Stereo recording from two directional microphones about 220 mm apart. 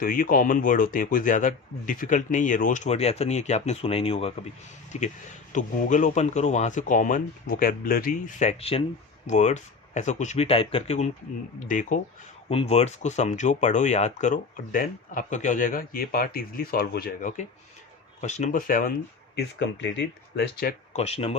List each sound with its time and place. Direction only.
0.0 s speech: 40° left (ahead or behind)
19.4 s speech: 55° left (ahead or behind)
20.9 s speech: 30° left (ahead or behind)